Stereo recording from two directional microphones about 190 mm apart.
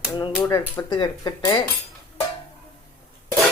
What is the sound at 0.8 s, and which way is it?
Speech, 20° left (ahead or behind).